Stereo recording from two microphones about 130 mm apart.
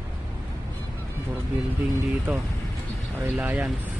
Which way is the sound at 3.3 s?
15° right (ahead or behind).